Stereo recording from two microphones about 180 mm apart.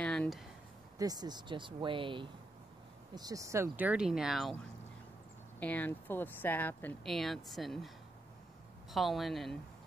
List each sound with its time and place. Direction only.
0.0 s a sound: 5° left (ahead or behind)
0.9 s speech: 20° right (ahead or behind); by 4.6 s centre (ahead or behind)
5.6 s speech: 10° left (ahead or behind)
8.9 s speech: centre (ahead or behind)